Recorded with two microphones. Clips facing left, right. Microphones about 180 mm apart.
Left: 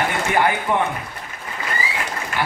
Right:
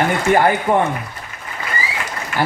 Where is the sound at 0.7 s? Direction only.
40° right (ahead or behind).